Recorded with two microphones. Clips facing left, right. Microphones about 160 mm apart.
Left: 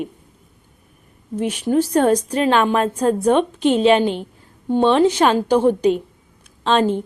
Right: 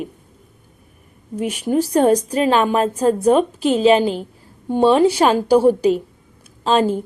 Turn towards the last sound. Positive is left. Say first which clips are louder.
# right 1 dB
turn(degrees=-5)  # may be behind; listen again after turning